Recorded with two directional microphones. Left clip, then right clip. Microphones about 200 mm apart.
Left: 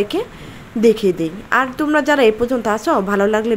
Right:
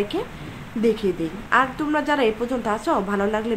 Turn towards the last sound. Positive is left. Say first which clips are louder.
# left 7 dB
turn(degrees=30)  # may be behind; listen again after turning